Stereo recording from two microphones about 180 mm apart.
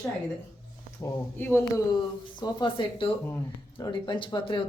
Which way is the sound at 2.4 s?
25° left (ahead or behind).